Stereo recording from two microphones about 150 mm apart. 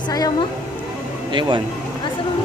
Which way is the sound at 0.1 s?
25° left (ahead or behind).